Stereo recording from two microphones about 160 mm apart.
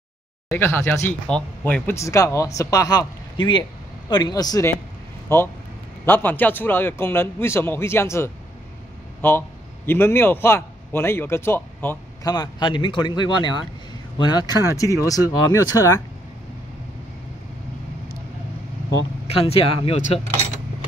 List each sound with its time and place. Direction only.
0.5 s a man's voice: 15° left (ahead or behind)
19.2 s speech: 40° left (ahead or behind)